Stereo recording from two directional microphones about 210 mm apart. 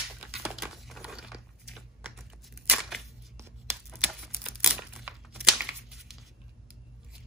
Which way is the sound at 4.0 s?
5° right (ahead or behind).